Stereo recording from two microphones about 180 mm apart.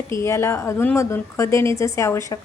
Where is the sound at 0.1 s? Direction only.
15° left (ahead or behind).